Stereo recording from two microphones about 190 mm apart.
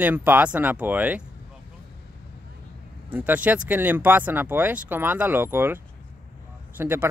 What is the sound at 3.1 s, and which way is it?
Speech, 10° right (ahead or behind).